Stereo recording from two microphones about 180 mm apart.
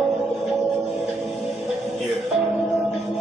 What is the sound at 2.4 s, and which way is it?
Speech, centre (ahead or behind).